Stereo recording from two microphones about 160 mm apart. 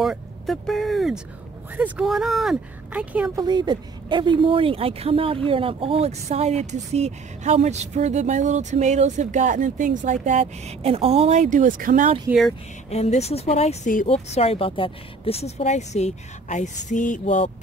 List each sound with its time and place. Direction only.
0.0 s speech: centre (ahead or behind)
3.3 s speech: 25° right (ahead or behind); by 12.1 s 55° right (ahead or behind)
12.3 s speech: centre (ahead or behind)
12.9 s speech: 40° left (ahead or behind)